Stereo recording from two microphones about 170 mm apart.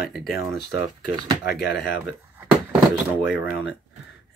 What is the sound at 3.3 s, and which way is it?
Speech, centre (ahead or behind).